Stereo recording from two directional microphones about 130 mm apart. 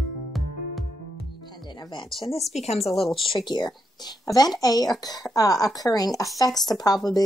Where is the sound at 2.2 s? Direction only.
50° left (ahead or behind).